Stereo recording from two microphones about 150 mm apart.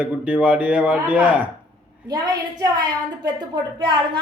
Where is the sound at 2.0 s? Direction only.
25° right (ahead or behind).